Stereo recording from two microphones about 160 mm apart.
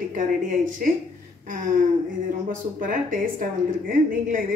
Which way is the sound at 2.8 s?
60° right (ahead or behind).